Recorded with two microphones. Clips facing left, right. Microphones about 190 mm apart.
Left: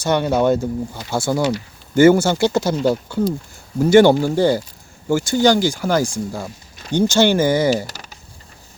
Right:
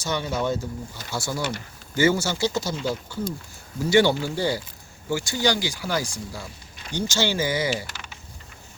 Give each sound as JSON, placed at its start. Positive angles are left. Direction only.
{"t": 0.0, "sound": "speech", "side_deg": 60}